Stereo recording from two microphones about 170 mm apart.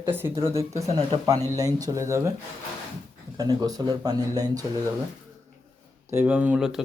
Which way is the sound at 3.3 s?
20° right (ahead or behind).